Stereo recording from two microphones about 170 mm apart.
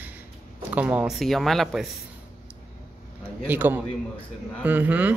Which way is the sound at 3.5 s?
10° right (ahead or behind).